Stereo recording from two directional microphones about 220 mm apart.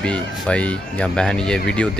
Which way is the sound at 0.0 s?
5° left (ahead or behind).